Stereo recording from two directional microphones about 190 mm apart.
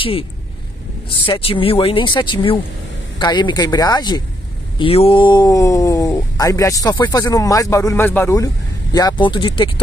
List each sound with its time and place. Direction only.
0.0 s speech: 30° left (ahead or behind)